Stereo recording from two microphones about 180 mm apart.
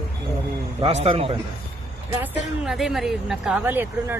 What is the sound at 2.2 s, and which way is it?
Speech, 5° right (ahead or behind).